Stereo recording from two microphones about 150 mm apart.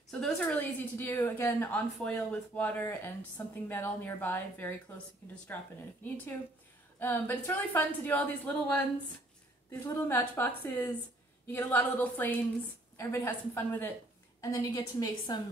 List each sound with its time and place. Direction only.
0.1 s a woman's voice: 5° left (ahead or behind)
7.0 s a woman's voice: 15° left (ahead or behind)